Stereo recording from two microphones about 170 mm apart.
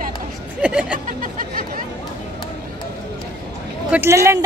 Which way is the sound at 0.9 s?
50° right (ahead or behind).